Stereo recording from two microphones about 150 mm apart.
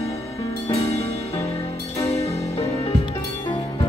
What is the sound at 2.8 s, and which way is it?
Music, 35° left (ahead or behind).